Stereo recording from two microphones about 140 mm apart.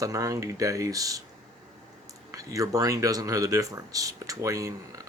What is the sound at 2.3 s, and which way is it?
Speech, 25° right (ahead or behind).